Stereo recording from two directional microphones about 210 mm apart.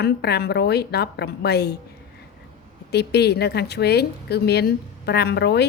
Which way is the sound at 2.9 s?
50° left (ahead or behind).